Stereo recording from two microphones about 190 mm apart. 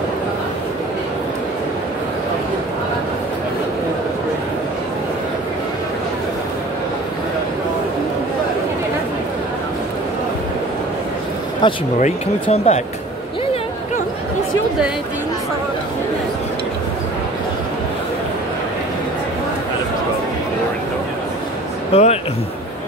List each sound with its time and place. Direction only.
11.6 s speech: 25° left (ahead or behind)
12.0 s speech: 35° left (ahead or behind)
21.9 s speech: 35° left (ahead or behind)